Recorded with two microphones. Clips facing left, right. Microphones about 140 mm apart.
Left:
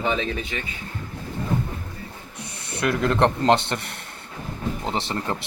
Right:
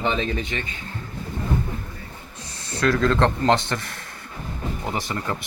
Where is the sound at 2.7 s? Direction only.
20° left (ahead or behind).